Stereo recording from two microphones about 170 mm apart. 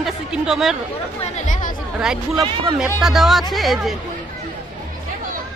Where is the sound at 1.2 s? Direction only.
45° left (ahead or behind).